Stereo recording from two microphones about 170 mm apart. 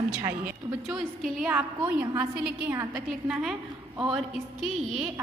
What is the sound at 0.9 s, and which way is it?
A woman's voice, 5° right (ahead or behind).